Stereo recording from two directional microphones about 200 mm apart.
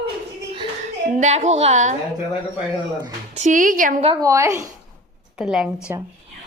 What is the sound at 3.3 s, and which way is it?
Speech, 35° right (ahead or behind).